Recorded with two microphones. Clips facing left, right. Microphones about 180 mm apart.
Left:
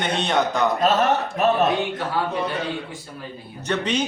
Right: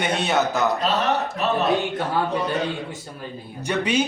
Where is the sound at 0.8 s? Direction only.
50° left (ahead or behind).